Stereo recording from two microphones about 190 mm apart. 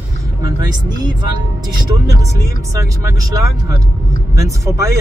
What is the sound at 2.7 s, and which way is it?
Speech, 20° right (ahead or behind).